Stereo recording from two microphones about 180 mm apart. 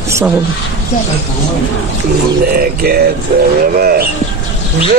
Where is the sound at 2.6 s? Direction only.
60° right (ahead or behind).